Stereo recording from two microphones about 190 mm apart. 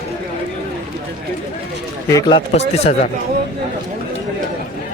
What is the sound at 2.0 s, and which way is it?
Speech, 15° left (ahead or behind).